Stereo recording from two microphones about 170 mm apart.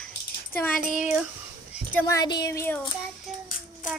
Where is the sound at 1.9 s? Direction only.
10° left (ahead or behind).